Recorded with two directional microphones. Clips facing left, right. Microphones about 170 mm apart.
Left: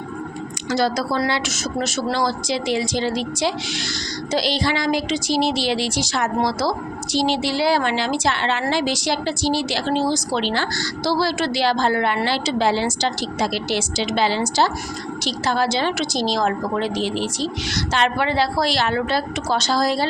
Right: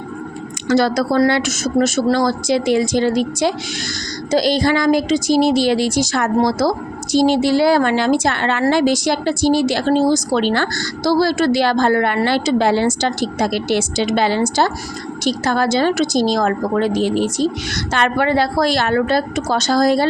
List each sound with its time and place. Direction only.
0.7 s a woman's voice: 60° right (ahead or behind)